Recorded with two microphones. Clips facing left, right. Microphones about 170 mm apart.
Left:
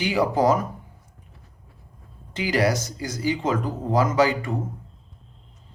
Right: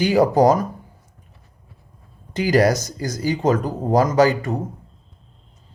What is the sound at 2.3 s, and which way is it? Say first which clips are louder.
Speech: right 5 dB; 40° right (ahead or behind).